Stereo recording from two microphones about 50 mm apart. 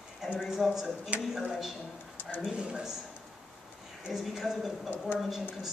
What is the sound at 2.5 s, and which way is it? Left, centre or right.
Speech, centre.